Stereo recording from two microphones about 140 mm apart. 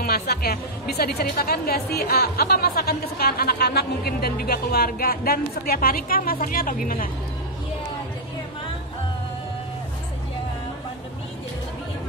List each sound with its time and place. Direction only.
0.0 s speech: 90° left